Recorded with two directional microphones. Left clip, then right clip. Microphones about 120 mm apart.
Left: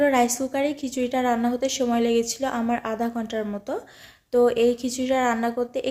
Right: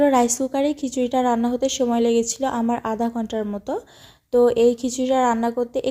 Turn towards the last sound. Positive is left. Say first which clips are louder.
# right 3 dB
turn(degrees=-40)  # may be behind; listen again after turning